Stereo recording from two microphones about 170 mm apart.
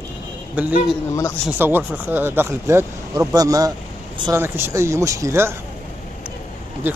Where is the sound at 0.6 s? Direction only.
10° right (ahead or behind).